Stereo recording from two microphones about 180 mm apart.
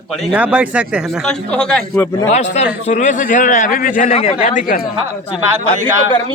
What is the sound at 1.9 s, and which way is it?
Speech, 15° left (ahead or behind).